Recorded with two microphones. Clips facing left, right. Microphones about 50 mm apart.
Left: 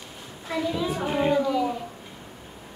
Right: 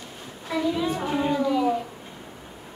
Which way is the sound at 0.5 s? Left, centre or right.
Centre.